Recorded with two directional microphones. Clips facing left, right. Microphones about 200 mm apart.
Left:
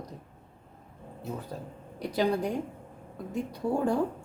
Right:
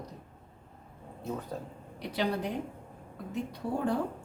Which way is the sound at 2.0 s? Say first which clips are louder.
Left 4 dB; 40° left (ahead or behind).